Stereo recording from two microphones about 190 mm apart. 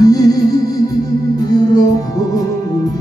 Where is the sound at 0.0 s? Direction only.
20° left (ahead or behind).